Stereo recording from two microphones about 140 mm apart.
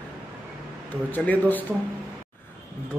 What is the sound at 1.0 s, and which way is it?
Speech, 15° left (ahead or behind).